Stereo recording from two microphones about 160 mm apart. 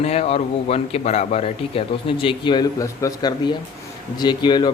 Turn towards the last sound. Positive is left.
turn(degrees=25)  # may be behind; listen again after turning